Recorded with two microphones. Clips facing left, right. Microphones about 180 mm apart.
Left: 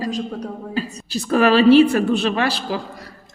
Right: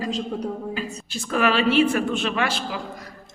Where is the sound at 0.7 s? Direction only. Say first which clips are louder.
Left 6 dB; 35° left (ahead or behind).